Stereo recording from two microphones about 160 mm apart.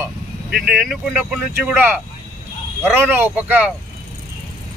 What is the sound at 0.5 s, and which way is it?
Speech, 75° right (ahead or behind).